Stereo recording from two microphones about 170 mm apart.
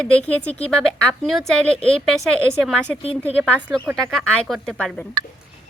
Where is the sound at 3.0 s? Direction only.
35° left (ahead or behind).